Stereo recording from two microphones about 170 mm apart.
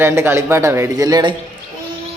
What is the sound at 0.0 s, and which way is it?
A man's voice, 15° right (ahead or behind).